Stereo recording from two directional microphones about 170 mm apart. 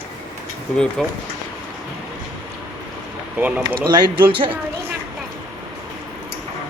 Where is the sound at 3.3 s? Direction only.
10° right (ahead or behind).